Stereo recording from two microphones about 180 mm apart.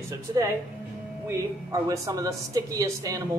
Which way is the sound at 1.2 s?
15° right (ahead or behind).